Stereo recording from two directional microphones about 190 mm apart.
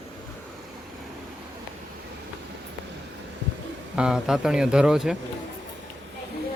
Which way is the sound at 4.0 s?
5° right (ahead or behind).